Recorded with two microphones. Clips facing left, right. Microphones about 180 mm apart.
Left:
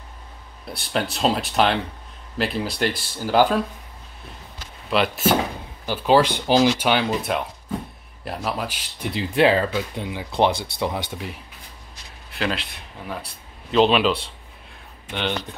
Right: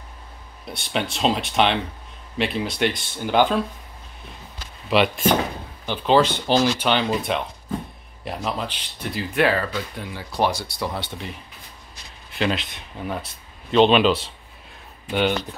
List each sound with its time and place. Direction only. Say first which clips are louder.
0.7 s speech: left 1 dB; centre (ahead or behind)
4.8 s speech: right 1 dB; centre (ahead or behind)
9.1 s speech: left 3 dB; 25° left (ahead or behind); by 11.3 s 5° left (ahead or behind)
12.4 s speech: right 2 dB; centre (ahead or behind)
13.7 s speech: right 2 dB; centre (ahead or behind)